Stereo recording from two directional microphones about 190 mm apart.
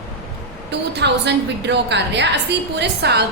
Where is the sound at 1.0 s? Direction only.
65° right (ahead or behind).